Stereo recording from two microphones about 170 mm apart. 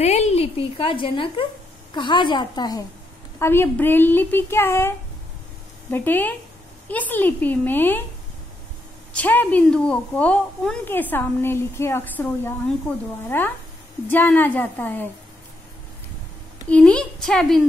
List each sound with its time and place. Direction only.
0.0 s a woman's voice: 40° left (ahead or behind); by 2.8 s 25° left (ahead or behind)
3.3 s a woman's voice: 15° left (ahead or behind)
9.1 s a woman's voice: 10° left (ahead or behind)
16.6 s a woman's voice: 5° left (ahead or behind)